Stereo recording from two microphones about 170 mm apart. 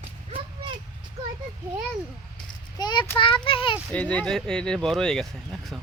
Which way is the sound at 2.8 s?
25° left (ahead or behind).